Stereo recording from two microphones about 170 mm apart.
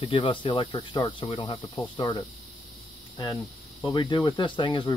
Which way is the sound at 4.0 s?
25° left (ahead or behind).